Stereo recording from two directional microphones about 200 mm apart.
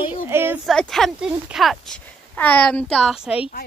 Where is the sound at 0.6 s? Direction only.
Centre (ahead or behind).